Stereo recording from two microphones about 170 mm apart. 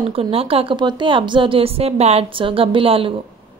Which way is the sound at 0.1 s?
35° right (ahead or behind).